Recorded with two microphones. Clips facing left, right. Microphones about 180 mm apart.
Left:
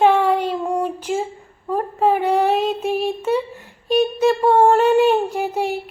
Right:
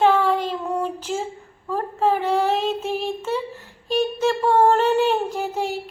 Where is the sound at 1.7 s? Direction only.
10° left (ahead or behind).